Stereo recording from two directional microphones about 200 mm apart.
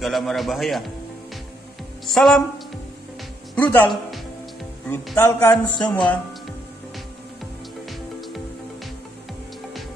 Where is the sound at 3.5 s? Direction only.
5° left (ahead or behind).